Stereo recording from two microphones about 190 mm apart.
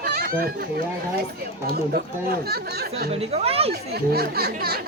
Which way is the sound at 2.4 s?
55° right (ahead or behind).